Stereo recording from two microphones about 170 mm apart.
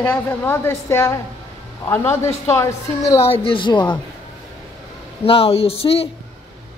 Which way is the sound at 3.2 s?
35° left (ahead or behind).